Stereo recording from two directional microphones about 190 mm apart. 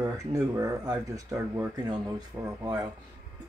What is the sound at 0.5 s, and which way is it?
Speech, 15° right (ahead or behind).